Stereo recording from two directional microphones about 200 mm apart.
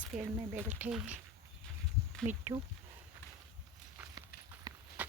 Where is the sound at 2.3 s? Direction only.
10° right (ahead or behind).